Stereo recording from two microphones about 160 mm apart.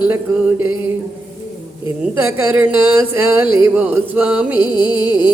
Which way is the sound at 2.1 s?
10° right (ahead or behind).